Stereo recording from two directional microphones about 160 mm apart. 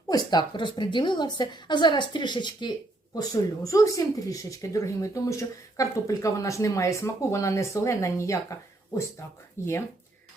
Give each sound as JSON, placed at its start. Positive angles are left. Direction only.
{"t": 0.1, "sound": "a woman's voice", "side_deg": 25}
{"t": 9.6, "sound": "speech", "side_deg": 15}